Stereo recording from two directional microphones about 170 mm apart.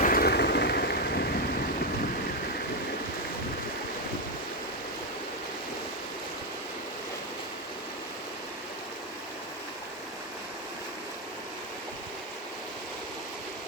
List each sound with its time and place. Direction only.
0.0 s vehicle: 60° left (ahead or behind)